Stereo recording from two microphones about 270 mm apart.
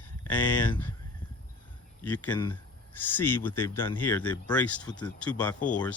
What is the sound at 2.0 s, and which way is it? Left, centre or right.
Speech, centre.